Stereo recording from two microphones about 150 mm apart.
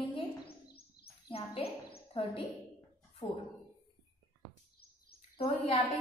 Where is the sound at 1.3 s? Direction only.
40° left (ahead or behind).